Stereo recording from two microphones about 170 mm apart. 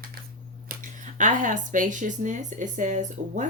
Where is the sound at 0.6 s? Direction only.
50° right (ahead or behind).